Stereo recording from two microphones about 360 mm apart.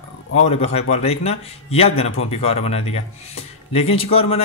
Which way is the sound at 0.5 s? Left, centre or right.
Centre.